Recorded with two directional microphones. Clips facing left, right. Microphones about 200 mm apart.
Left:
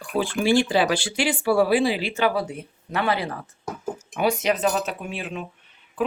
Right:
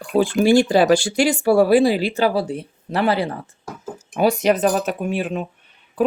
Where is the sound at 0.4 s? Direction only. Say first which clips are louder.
Right 5 dB; 45° right (ahead or behind).